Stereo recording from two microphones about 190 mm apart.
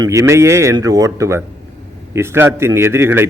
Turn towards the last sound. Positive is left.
turn(degrees=-10)  # may be behind; listen again after turning